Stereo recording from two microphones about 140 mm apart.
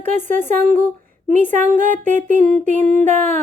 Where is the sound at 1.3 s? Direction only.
65° right (ahead or behind).